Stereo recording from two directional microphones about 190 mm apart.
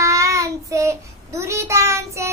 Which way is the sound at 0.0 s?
15° right (ahead or behind).